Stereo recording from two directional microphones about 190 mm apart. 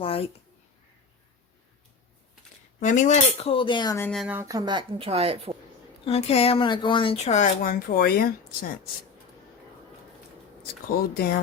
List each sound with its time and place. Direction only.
0.0 s speech: 30° left (ahead or behind)
2.8 s speech: 40° left (ahead or behind); by 4.1 s 15° left (ahead or behind)
4.1 s speech: centre (ahead or behind)
4.4 s a woman's voice: 20° right (ahead or behind)
6.1 s speech: 30° left (ahead or behind); by 8.3 s 50° left (ahead or behind)
10.9 s speech: 55° left (ahead or behind)